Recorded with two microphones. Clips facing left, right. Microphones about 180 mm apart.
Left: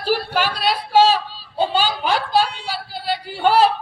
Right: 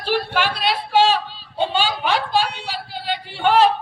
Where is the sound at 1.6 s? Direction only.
40° left (ahead or behind).